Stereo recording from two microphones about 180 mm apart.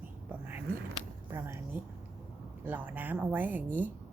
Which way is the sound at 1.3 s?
20° right (ahead or behind).